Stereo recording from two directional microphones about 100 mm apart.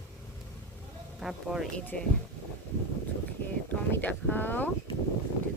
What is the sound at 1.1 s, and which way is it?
Speech, 5° right (ahead or behind).